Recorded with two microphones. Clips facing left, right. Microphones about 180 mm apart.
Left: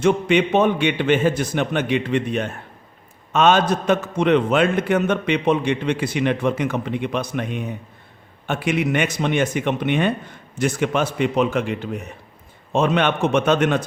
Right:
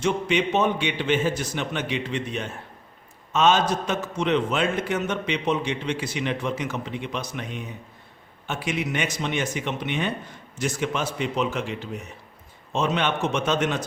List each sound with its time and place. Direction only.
0.0 s a man's voice: 55° left (ahead or behind)